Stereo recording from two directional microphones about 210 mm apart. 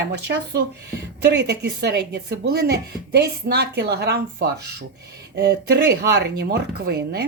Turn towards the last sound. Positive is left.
turn(degrees=-50)  # may be behind; listen again after turning